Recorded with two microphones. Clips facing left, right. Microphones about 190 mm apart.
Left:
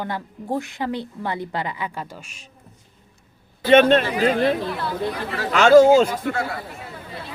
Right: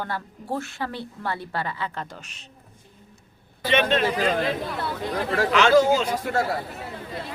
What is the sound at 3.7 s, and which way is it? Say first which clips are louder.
Speech: left 7 dB; 50° left (ahead or behind).